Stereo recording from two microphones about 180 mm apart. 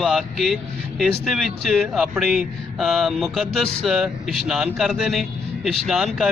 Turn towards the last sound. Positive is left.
turn(degrees=0)  # may be behind; listen again after turning